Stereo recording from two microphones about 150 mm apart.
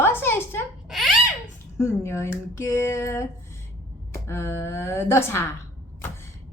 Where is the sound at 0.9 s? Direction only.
Centre (ahead or behind).